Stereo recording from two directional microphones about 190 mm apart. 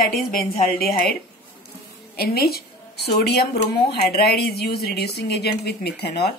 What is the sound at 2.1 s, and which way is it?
A woman's voice, 55° left (ahead or behind).